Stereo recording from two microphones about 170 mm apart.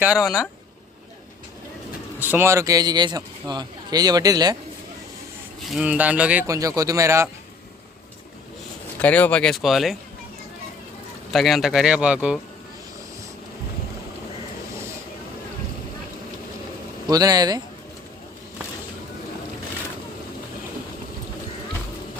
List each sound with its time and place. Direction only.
0.0 s speech: 5° right (ahead or behind)
2.1 s speech: 10° right (ahead or behind)
5.7 s speech: 10° right (ahead or behind)
6.5 s speech: 20° right (ahead or behind)
9.0 s speech: 10° left (ahead or behind)
11.3 s speech: centre (ahead or behind)
17.1 s speech: 20° right (ahead or behind)